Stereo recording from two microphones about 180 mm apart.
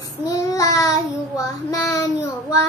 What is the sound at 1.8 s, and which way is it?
Speech, 15° left (ahead or behind).